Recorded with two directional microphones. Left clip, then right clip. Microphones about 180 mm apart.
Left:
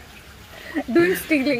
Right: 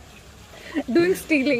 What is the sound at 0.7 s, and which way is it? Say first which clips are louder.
Speech: left 1 dB; 30° right (ahead or behind).